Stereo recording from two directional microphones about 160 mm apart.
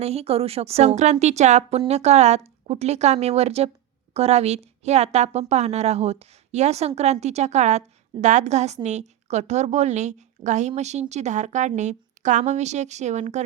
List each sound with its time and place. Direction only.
0.0 s a woman's voice: 40° right (ahead or behind)